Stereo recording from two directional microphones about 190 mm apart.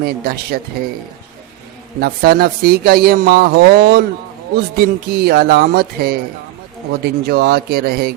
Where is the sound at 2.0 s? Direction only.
55° right (ahead or behind).